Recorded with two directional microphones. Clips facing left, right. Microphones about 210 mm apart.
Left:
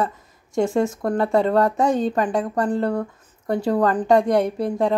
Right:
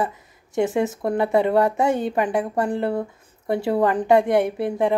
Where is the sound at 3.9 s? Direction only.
10° right (ahead or behind).